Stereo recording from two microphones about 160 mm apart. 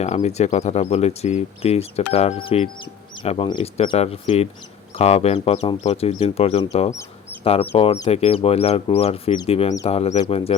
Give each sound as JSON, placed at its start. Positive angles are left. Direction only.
{"t": 0.0, "sound": "speech", "side_deg": 45}